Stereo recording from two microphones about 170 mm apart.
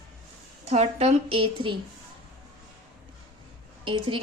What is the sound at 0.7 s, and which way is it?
Speech, 40° right (ahead or behind).